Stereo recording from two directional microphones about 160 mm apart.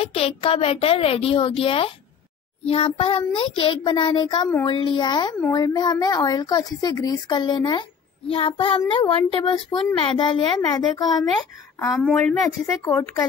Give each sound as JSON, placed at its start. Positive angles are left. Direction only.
{"t": 0.0, "sound": "a woman's voice", "side_deg": 40}
{"t": 11.9, "sound": "a woman's voice", "side_deg": 5}
{"t": 12.4, "sound": "speech", "side_deg": 15}